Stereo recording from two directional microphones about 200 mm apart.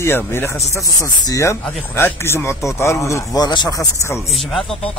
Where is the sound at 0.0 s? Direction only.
10° left (ahead or behind).